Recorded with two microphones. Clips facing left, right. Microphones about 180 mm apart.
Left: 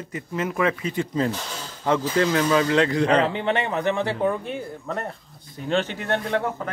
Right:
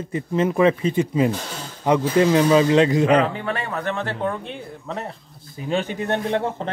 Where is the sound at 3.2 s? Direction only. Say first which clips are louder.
Left 1 dB; 25° left (ahead or behind); by 5.1 s centre (ahead or behind).